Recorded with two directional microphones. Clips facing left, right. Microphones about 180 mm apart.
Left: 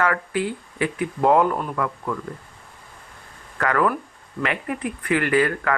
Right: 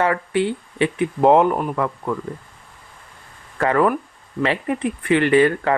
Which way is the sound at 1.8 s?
30° right (ahead or behind).